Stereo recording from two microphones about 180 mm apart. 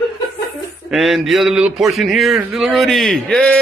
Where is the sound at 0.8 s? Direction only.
Centre (ahead or behind).